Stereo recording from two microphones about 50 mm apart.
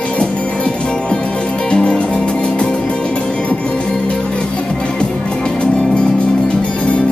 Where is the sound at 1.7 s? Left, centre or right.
Left.